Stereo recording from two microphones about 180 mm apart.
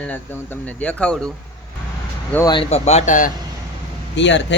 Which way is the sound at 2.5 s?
35° left (ahead or behind).